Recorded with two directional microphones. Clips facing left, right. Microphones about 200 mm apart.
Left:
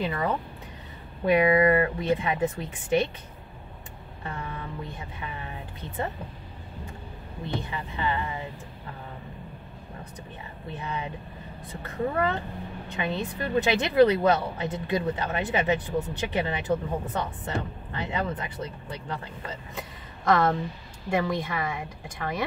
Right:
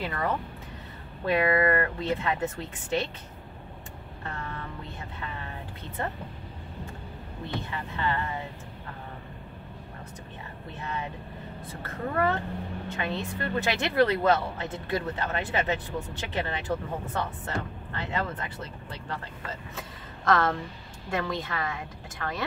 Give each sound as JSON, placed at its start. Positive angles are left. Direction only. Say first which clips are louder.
{"t": 0.0, "sound": "speech", "louder": "left 2 dB", "side_deg": 15}
{"t": 4.2, "sound": "speech", "louder": "left 2 dB", "side_deg": 15}
{"t": 7.4, "sound": "speech", "louder": "left 2 dB", "side_deg": 15}
{"t": 10.7, "sound": "speech", "louder": "left 2 dB", "side_deg": 15}
{"t": 21.1, "sound": "speech", "louder": "left 4 dB", "side_deg": 15}